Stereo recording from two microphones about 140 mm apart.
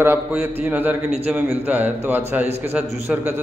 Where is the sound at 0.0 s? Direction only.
15° right (ahead or behind).